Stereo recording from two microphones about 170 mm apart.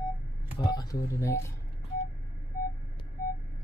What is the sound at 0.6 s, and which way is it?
Speech, 25° left (ahead or behind).